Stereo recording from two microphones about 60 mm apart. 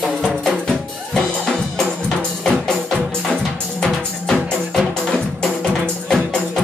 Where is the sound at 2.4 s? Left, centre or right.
Centre.